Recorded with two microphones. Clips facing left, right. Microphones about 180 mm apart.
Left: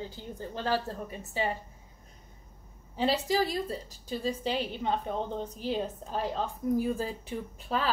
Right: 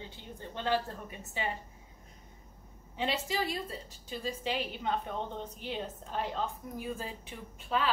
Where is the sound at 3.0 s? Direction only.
40° left (ahead or behind).